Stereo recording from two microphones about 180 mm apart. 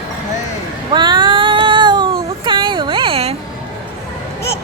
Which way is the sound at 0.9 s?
25° right (ahead or behind).